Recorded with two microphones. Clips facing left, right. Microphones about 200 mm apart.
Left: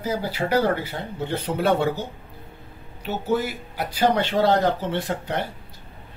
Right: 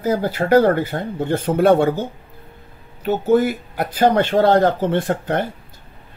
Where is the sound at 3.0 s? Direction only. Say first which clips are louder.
Right 8 dB; 50° right (ahead or behind).